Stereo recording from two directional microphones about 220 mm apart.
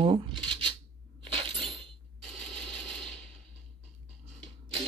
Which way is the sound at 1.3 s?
20° right (ahead or behind).